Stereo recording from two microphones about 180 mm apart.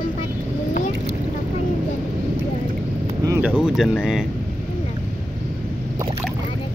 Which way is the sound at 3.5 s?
5° right (ahead or behind).